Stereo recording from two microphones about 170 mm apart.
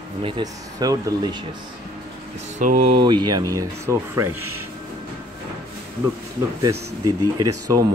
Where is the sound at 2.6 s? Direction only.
50° right (ahead or behind).